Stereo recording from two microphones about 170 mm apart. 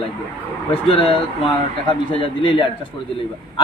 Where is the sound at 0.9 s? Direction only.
30° left (ahead or behind).